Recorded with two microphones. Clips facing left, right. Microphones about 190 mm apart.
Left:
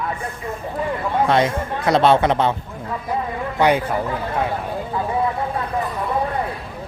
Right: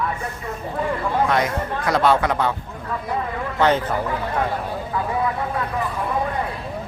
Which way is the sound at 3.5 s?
10° left (ahead or behind).